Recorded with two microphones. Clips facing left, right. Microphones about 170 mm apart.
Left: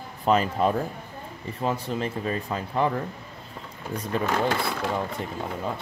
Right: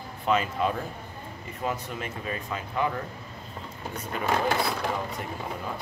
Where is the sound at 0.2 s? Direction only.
40° left (ahead or behind).